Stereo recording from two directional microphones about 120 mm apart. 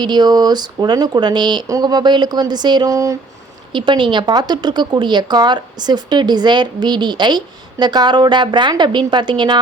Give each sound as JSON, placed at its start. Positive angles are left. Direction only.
{"t": 0.0, "sound": "speech", "side_deg": -35}
{"t": 3.7, "sound": "speech", "side_deg": -40}